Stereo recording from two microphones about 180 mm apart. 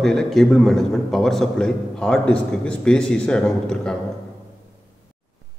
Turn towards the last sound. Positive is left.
turn(degrees=5)  # may be behind; listen again after turning